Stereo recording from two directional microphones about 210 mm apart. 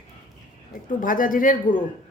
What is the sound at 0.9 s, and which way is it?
Speech, 40° left (ahead or behind).